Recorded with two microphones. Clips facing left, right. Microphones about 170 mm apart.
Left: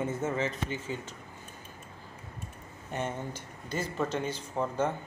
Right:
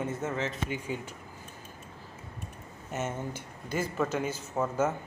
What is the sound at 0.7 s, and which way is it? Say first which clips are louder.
Speech: right 1 dB; 10° right (ahead or behind).